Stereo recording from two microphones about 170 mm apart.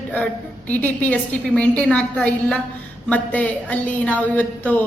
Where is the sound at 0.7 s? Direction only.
10° left (ahead or behind).